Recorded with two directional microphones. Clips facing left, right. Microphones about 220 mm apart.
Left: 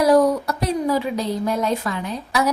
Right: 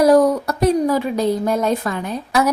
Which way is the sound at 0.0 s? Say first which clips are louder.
Right 3 dB; 45° right (ahead or behind).